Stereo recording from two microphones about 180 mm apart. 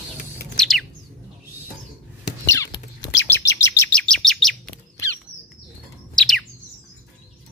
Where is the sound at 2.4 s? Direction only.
15° left (ahead or behind).